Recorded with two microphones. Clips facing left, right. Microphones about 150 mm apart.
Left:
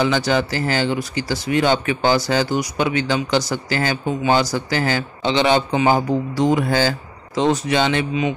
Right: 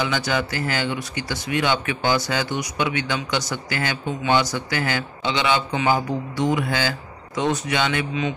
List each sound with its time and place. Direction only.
0.0 s speech: 35° left (ahead or behind)